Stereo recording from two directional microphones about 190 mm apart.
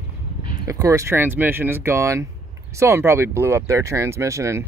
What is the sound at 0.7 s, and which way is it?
Speech, 15° right (ahead or behind).